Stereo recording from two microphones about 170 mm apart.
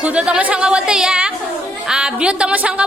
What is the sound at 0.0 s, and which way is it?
A woman's voice, 5° right (ahead or behind).